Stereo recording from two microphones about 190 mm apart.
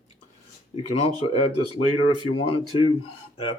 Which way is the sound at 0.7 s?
30° left (ahead or behind).